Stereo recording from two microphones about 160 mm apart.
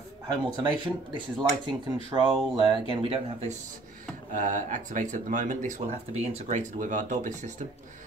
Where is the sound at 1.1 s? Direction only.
30° right (ahead or behind).